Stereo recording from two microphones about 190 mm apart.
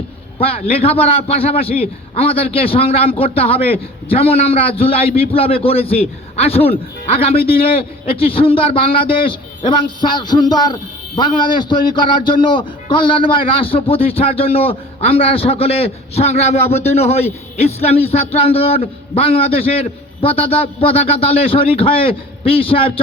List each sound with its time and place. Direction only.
0.3 s a man's voice: 30° left (ahead or behind)